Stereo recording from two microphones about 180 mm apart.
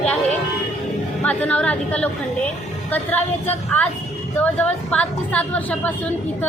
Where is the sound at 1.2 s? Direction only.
5° left (ahead or behind).